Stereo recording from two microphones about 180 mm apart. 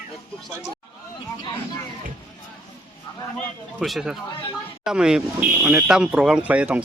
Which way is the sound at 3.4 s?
Centre (ahead or behind).